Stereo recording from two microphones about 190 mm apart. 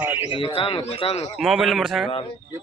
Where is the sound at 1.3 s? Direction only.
Centre (ahead or behind).